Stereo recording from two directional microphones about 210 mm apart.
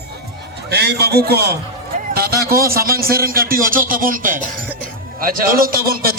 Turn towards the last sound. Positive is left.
turn(degrees=-45)  # may be behind; listen again after turning